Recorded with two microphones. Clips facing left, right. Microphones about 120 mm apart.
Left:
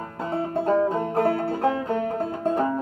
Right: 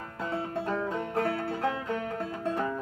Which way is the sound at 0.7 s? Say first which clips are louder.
Left 9 dB; 30° left (ahead or behind).